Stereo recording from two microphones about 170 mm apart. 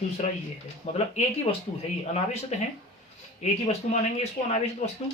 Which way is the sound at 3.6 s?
35° left (ahead or behind).